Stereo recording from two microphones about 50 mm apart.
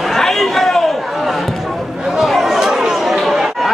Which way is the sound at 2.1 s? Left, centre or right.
Centre.